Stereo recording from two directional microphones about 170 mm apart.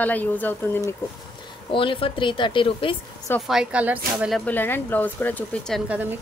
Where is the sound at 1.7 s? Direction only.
30° left (ahead or behind).